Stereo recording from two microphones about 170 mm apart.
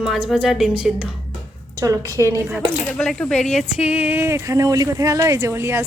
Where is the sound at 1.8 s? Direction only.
20° right (ahead or behind).